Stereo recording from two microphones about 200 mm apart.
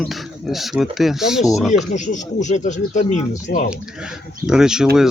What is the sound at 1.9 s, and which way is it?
Speech, 35° left (ahead or behind).